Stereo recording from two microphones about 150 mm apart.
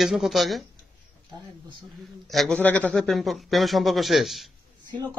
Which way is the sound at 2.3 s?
Centre (ahead or behind).